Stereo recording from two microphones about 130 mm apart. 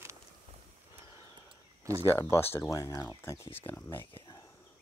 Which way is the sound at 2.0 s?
20° left (ahead or behind).